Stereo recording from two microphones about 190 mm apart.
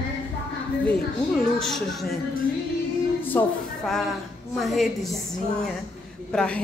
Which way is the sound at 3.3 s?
10° left (ahead or behind).